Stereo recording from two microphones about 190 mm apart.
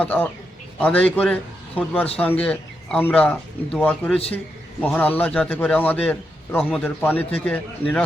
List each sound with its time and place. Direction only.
0.0 s a man's voice: 10° left (ahead or behind)